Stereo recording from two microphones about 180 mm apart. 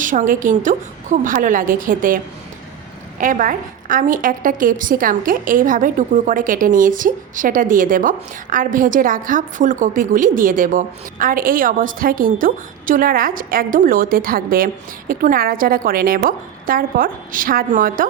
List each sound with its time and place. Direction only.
0.0 s a woman's voice: 45° right (ahead or behind)